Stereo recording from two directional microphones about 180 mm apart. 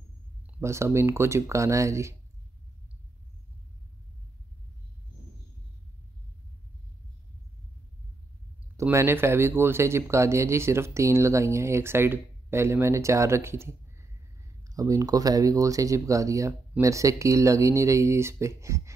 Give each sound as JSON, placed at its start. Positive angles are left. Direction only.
{"t": 0.6, "sound": "speech", "side_deg": -15}
{"t": 8.7, "sound": "speech", "side_deg": -15}